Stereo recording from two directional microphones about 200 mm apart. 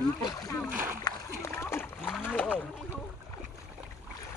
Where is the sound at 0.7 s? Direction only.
10° right (ahead or behind).